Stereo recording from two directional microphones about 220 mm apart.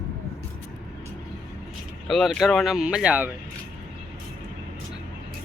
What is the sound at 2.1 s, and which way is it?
Speech, centre (ahead or behind).